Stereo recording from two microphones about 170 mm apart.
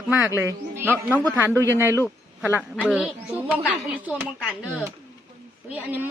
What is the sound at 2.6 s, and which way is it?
A woman's voice, 5° right (ahead or behind).